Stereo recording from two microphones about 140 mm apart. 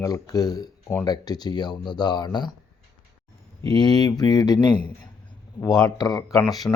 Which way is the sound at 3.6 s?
30° left (ahead or behind).